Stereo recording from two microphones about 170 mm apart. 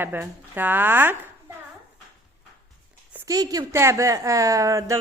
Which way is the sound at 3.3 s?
20° right (ahead or behind).